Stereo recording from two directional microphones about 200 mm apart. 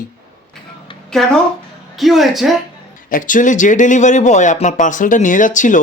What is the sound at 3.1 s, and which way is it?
Speech, 40° left (ahead or behind).